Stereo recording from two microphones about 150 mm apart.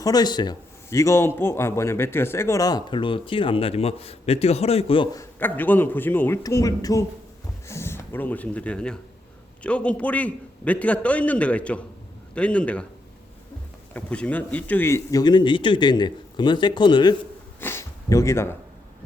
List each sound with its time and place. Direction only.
0.0 s a man's voice: 25° left (ahead or behind)
5.1 s a man's voice: 15° left (ahead or behind)
13.9 s a man's voice: 10° left (ahead or behind); by 17.2 s 30° left (ahead or behind)
17.6 s speech: 15° left (ahead or behind)